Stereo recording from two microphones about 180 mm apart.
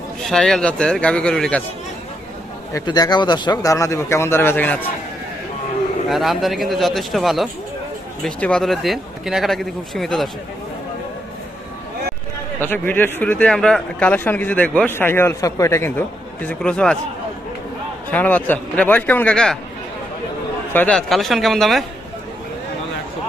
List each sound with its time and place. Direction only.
0.3 s speech: 5° left (ahead or behind)
2.7 s speech: 20° left (ahead or behind)
6.1 s speech: centre (ahead or behind)
12.5 s speech: 10° left (ahead or behind)
18.1 s speech: 10° left (ahead or behind)
20.7 s speech: 5° left (ahead or behind)